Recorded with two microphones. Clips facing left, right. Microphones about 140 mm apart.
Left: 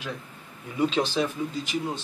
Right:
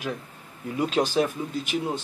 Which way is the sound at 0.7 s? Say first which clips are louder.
Even; 5° right (ahead or behind).